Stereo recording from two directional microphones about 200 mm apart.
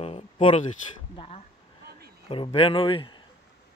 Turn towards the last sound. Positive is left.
turn(degrees=25)  # may be behind; listen again after turning